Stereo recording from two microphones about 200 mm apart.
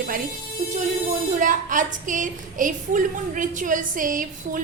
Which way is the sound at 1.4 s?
40° right (ahead or behind).